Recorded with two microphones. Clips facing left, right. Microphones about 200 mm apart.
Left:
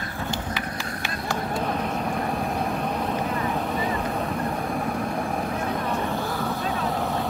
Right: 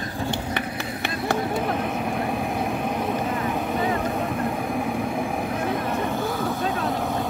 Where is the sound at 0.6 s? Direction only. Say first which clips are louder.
Right 3 dB; 60° right (ahead or behind).